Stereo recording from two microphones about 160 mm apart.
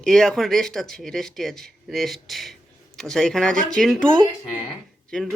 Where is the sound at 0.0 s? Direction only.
5° left (ahead or behind).